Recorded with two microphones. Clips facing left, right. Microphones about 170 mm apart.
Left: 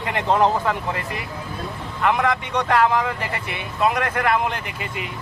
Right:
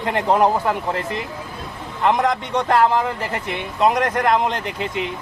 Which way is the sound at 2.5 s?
15° right (ahead or behind).